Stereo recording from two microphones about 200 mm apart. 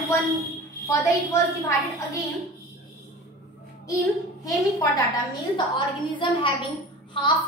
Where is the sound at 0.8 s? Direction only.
15° left (ahead or behind).